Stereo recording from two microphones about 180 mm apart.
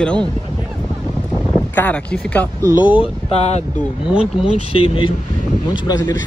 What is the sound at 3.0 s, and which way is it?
Speech, 35° left (ahead or behind).